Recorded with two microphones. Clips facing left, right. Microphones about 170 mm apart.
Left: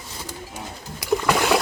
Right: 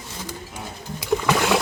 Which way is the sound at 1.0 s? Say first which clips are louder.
Even; centre (ahead or behind).